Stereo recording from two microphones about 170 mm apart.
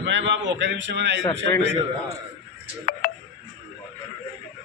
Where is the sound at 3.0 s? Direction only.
55° left (ahead or behind).